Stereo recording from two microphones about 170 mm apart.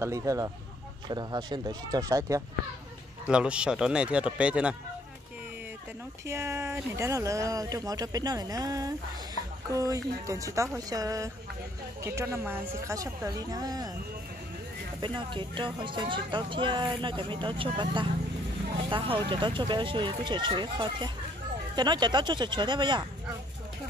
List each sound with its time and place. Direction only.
0.0 s speech: 20° right (ahead or behind)
3.3 s speech: 5° right (ahead or behind)
6.2 s speech: 15° right (ahead or behind)
15.0 s speech: 25° right (ahead or behind)